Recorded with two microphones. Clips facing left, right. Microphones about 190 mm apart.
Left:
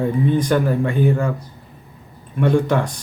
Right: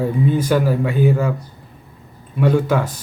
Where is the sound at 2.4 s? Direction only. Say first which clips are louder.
Even; 5° right (ahead or behind).